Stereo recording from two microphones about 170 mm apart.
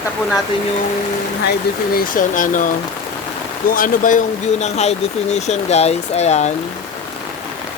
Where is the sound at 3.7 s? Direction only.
55° left (ahead or behind).